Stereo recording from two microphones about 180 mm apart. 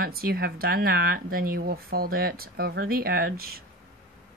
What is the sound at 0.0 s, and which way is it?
A woman's voice, 55° right (ahead or behind).